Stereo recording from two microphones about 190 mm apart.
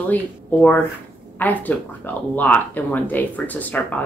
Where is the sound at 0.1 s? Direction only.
10° left (ahead or behind).